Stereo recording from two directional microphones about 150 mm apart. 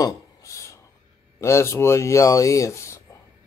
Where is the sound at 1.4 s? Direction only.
20° left (ahead or behind).